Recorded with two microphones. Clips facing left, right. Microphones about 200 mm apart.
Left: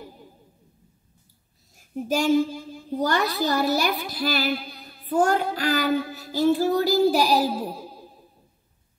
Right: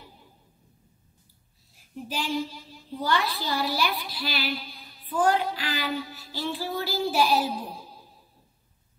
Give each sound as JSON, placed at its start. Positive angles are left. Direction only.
{"t": 1.8, "sound": "a woman's voice", "side_deg": 45}